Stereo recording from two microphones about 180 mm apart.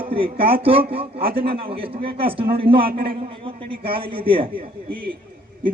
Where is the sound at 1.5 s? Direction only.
30° right (ahead or behind).